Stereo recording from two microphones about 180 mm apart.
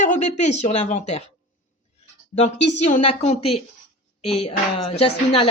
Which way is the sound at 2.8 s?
40° left (ahead or behind).